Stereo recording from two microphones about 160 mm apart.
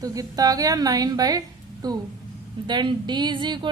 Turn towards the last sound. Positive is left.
turn(degrees=-30)  # may be behind; listen again after turning